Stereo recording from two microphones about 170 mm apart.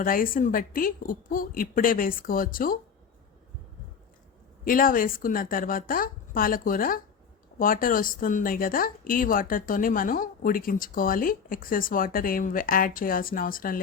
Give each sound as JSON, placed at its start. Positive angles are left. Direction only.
{"t": 0.0, "sound": "speech", "side_deg": 55}
{"t": 4.6, "sound": "speech", "side_deg": 55}